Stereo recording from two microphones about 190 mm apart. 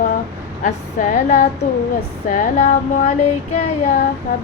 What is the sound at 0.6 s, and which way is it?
Female singing, 45° left (ahead or behind).